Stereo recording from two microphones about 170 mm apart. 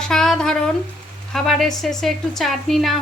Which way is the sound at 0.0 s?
5° left (ahead or behind).